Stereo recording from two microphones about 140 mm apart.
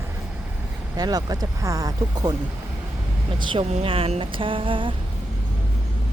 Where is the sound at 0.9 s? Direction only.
30° right (ahead or behind).